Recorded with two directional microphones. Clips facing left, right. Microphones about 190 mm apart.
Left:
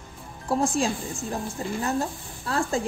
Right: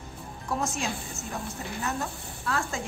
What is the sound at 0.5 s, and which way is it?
A woman's voice, 30° left (ahead or behind).